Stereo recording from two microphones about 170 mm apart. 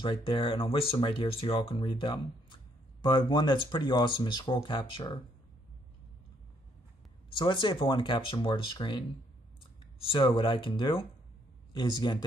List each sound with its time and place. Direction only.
0.0 s speech: 30° left (ahead or behind)
7.3 s speech: 30° left (ahead or behind)
10.1 s speech: 30° left (ahead or behind)